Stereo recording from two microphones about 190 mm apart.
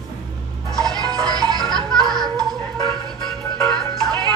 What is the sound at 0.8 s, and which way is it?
Music, 20° right (ahead or behind).